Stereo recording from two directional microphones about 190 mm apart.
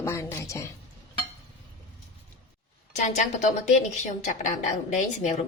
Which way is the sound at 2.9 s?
40° left (ahead or behind).